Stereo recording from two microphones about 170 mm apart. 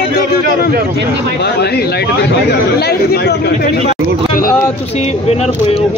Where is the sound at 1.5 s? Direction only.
70° left (ahead or behind).